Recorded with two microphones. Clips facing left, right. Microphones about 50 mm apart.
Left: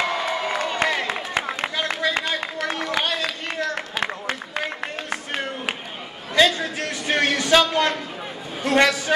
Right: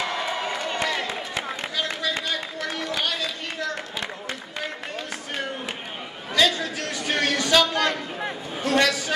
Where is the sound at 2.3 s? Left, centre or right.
Left.